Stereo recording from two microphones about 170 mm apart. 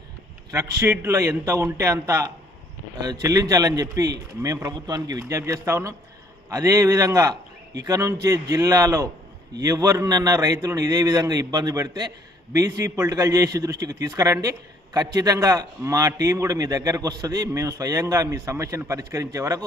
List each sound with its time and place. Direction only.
0.5 s a man's voice: 20° right (ahead or behind)